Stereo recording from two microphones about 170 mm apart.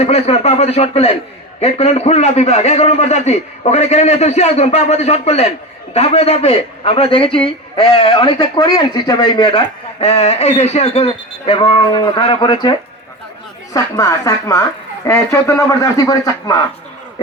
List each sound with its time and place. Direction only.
0.0 s a man's voice: 35° left (ahead or behind)
13.7 s a man's voice: 20° left (ahead or behind)